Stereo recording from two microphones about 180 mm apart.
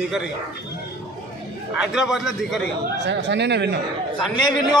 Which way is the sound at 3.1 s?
75° right (ahead or behind).